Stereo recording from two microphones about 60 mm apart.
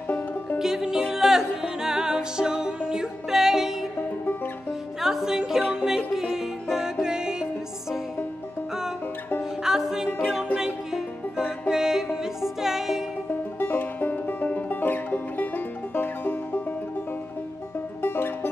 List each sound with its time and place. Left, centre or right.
0.1 s music: left
0.6 s music: centre
5.0 s music: centre
5.6 s music: left
5.9 s music: centre
9.4 s music: centre
13.3 s music: left
18.0 s music: left